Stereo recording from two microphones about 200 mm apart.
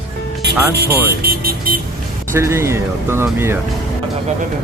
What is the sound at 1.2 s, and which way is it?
Speech, 50° right (ahead or behind).